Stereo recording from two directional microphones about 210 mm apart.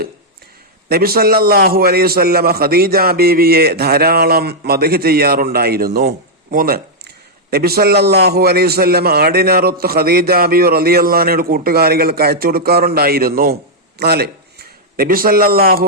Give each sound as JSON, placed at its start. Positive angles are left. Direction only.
{"t": 0.9, "sound": "a man's voice", "side_deg": -45}